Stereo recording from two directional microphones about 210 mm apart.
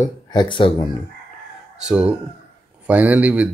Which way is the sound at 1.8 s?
5° right (ahead or behind).